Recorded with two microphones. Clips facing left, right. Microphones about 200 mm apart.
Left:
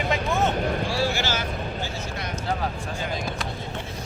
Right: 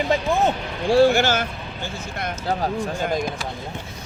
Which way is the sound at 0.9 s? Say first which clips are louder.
Right 10 dB; 50° right (ahead or behind).